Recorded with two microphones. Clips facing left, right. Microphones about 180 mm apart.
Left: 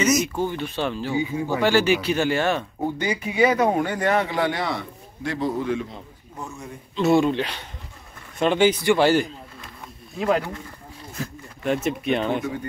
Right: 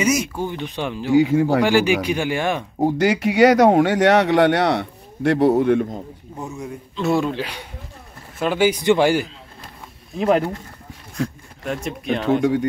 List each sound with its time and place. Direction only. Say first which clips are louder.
0.0 s speech: right 1 dB; 10° right (ahead or behind)
1.1 s speech: right 13 dB; 90° right
1.6 s speech: right 2 dB; 15° right (ahead or behind)
2.9 s speech: right 9 dB; 85° right; by 6.0 s 50° right (ahead or behind)
6.6 s speech: left 2 dB; centre (ahead or behind)
10.1 s speech: right 4 dB; 25° right (ahead or behind)
11.1 s speech: right 8 dB; centre (ahead or behind)
12.4 s speech: right 9 dB; 80° right